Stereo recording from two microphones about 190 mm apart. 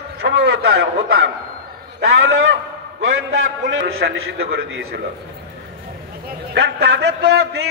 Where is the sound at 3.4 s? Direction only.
75° right (ahead or behind).